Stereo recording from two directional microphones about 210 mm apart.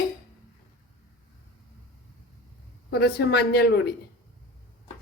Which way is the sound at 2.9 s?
50° left (ahead or behind).